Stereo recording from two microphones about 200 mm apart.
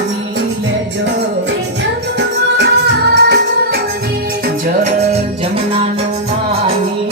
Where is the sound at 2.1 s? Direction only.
55° right (ahead or behind).